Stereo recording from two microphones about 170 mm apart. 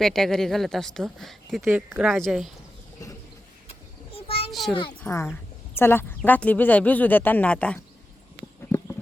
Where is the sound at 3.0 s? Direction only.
20° left (ahead or behind).